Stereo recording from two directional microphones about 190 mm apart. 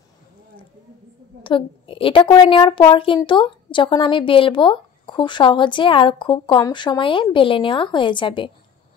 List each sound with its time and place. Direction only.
1.4 s a woman's voice: 25° left (ahead or behind)